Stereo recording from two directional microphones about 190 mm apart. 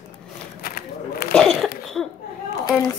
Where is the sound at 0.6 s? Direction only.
55° left (ahead or behind).